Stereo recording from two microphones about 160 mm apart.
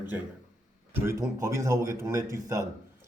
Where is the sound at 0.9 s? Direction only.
15° right (ahead or behind).